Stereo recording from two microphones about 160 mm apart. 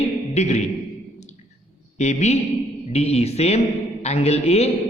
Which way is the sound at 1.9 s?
45° left (ahead or behind).